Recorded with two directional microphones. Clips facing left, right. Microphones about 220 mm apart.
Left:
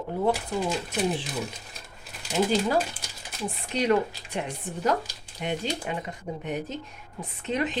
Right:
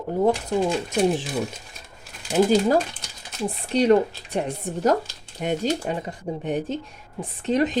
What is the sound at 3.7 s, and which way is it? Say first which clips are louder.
Speech: right 6 dB; 35° right (ahead or behind).